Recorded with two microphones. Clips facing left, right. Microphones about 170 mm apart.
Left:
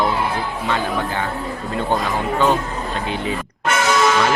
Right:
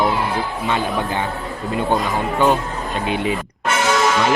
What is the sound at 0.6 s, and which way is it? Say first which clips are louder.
Speech: even; 20° right (ahead or behind).